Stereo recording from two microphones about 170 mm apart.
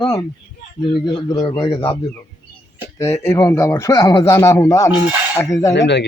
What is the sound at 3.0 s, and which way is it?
A man's voice, 15° left (ahead or behind).